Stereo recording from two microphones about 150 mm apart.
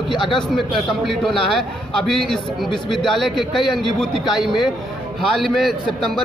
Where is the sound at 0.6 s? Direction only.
Centre (ahead or behind).